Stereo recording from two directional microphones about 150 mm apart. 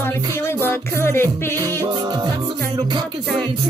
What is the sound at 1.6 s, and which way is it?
Music, 25° right (ahead or behind).